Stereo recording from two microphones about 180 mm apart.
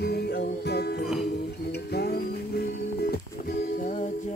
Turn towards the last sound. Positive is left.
turn(degrees=45)  # may be behind; listen again after turning